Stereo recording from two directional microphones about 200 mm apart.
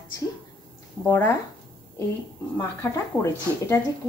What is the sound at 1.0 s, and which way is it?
Speech, 15° left (ahead or behind).